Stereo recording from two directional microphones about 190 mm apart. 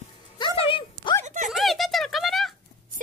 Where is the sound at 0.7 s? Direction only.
25° left (ahead or behind).